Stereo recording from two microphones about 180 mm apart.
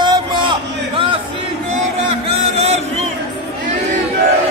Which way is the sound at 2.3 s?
35° right (ahead or behind).